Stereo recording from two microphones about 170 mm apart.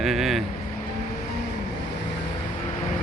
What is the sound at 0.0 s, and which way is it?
Vehicle, centre (ahead or behind).